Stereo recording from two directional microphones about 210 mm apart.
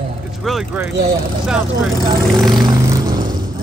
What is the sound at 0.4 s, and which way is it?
Vehicle, centre (ahead or behind).